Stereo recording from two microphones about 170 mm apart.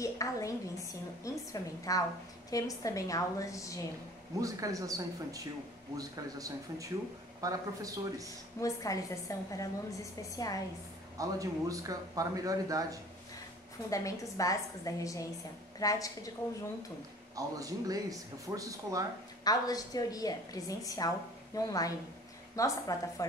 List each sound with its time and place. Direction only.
0.0 s a woman's voice: 20° left (ahead or behind)
4.4 s speech: 20° right (ahead or behind)
8.5 s a woman's voice: 20° left (ahead or behind)
11.1 s speech: 20° right (ahead or behind)
13.8 s a woman's voice: 20° left (ahead or behind)
17.4 s speech: 20° right (ahead or behind)
19.4 s a woman's voice: 20° left (ahead or behind)